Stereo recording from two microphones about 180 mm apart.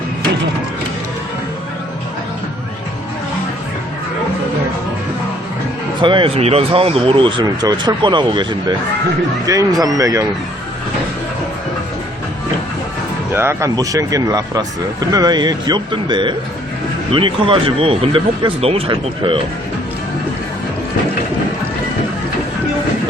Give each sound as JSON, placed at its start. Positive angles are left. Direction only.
{"t": 6.0, "sound": "speech", "side_deg": -25}
{"t": 13.3, "sound": "speech", "side_deg": -15}